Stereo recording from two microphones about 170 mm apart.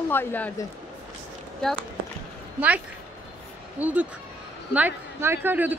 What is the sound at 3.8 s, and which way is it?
Speech, 10° right (ahead or behind).